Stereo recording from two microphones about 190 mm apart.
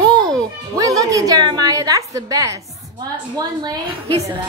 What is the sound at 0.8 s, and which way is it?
A woman's voice, 15° right (ahead or behind).